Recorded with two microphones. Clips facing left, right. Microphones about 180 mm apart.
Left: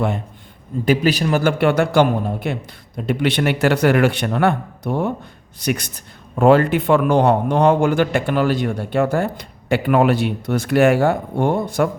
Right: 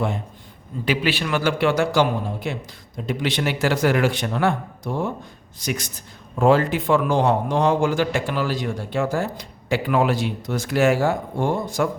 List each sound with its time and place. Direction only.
0.9 s a man's voice: 40° left (ahead or behind); by 11.9 s 60° left (ahead or behind)